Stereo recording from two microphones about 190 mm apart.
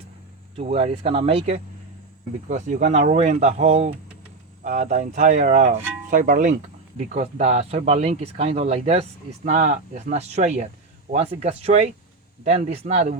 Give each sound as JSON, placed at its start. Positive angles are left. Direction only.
{"t": 0.5, "sound": "speech", "side_deg": -35}